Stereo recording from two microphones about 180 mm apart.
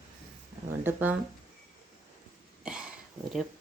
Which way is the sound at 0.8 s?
10° right (ahead or behind).